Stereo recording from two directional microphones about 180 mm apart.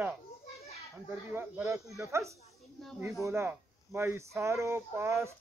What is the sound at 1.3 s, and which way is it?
Speech, 15° right (ahead or behind).